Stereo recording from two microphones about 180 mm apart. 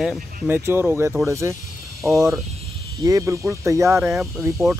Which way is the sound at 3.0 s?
15° right (ahead or behind).